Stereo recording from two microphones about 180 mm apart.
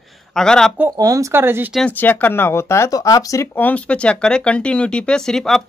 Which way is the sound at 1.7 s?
10° left (ahead or behind).